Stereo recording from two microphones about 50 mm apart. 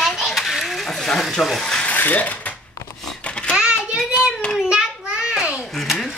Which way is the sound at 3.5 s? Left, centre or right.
Centre.